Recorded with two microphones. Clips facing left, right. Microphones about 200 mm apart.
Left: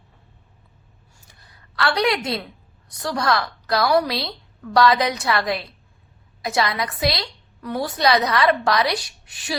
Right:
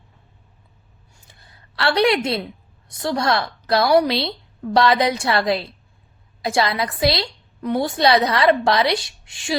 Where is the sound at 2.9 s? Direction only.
25° right (ahead or behind).